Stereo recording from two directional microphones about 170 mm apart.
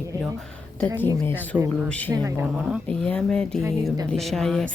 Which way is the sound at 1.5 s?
10° right (ahead or behind).